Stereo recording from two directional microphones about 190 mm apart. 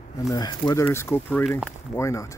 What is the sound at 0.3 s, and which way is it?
Speech, 20° left (ahead or behind).